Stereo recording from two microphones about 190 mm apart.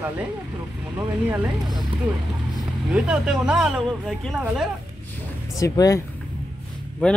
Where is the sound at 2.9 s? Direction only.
5° right (ahead or behind).